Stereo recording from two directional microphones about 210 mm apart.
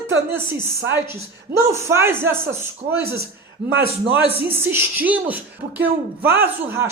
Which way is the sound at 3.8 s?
10° right (ahead or behind).